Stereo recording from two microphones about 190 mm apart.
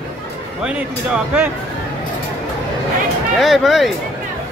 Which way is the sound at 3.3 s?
Centre (ahead or behind).